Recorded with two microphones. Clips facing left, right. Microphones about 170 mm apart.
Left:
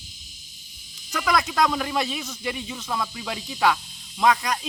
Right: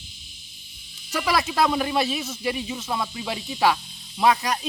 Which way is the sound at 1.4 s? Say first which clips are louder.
Right 2 dB; 25° right (ahead or behind).